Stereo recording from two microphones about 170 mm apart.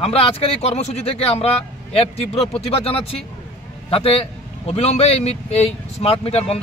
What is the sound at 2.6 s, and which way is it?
A man's voice, 35° left (ahead or behind).